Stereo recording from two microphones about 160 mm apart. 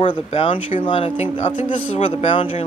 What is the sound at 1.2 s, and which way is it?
Speech, 45° left (ahead or behind).